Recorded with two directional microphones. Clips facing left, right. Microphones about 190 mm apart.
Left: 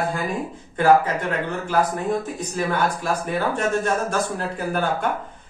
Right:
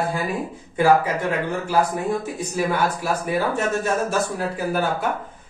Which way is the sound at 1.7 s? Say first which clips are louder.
Even; 10° right (ahead or behind).